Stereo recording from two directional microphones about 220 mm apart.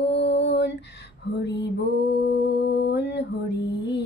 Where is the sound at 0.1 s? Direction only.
55° left (ahead or behind).